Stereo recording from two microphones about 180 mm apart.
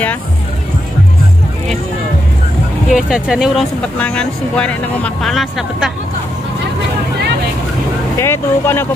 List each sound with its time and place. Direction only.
2.9 s speech: 5° right (ahead or behind)
8.2 s speech: 15° left (ahead or behind)